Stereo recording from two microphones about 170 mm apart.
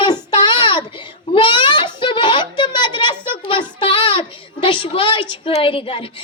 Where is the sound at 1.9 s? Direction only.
30° left (ahead or behind).